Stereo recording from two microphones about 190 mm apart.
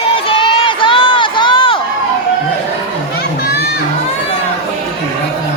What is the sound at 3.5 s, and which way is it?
Crowd, 55° left (ahead or behind).